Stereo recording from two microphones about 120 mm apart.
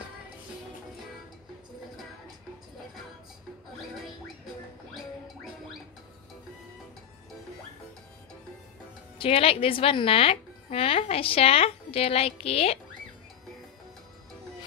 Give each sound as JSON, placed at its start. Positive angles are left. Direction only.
{"t": 9.2, "sound": "speech", "side_deg": 50}